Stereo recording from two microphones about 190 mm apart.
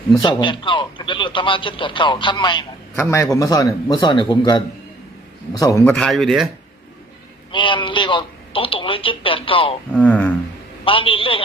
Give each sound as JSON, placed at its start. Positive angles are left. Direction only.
{"t": 0.2, "sound": "speech", "side_deg": 25}
{"t": 5.8, "sound": "speech", "side_deg": 5}
{"t": 7.5, "sound": "speech", "side_deg": 25}
{"t": 9.9, "sound": "speech", "side_deg": 10}
{"t": 10.8, "sound": "speech", "side_deg": 30}